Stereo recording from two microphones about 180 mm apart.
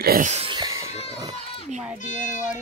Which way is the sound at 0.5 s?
20° right (ahead or behind).